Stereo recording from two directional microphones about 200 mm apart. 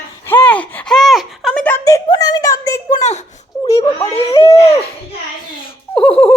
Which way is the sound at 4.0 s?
30° left (ahead or behind).